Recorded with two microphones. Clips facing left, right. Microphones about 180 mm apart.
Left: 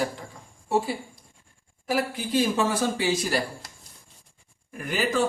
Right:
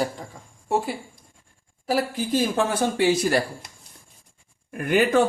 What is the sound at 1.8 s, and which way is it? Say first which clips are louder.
Speech: right 3 dB; 40° right (ahead or behind).